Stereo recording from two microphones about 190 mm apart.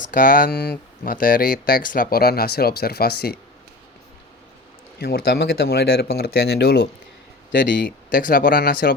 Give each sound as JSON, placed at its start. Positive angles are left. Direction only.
{"t": 0.0, "sound": "speech", "side_deg": 45}
{"t": 4.9, "sound": "speech", "side_deg": 55}
{"t": 8.1, "sound": "speech", "side_deg": 45}